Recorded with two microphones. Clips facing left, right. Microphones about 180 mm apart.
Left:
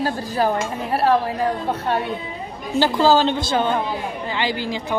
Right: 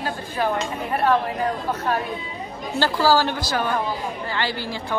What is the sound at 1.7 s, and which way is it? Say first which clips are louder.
A woman's voice: left 2 dB; 30° left (ahead or behind).